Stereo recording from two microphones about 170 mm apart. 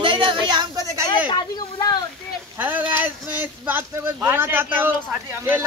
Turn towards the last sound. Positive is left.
turn(degrees=-10)  # may be behind; listen again after turning